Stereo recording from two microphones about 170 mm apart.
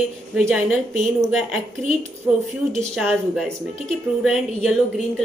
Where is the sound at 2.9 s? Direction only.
Centre (ahead or behind).